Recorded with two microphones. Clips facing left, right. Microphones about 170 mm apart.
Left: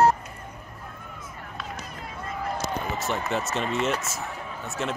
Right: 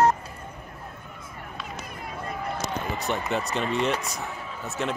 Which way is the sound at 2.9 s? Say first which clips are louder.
Right 2 dB; centre (ahead or behind).